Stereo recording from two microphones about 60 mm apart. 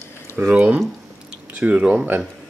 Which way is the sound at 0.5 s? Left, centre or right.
Right.